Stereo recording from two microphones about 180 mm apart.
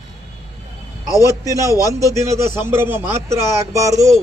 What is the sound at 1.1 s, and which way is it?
A man's voice, 15° right (ahead or behind).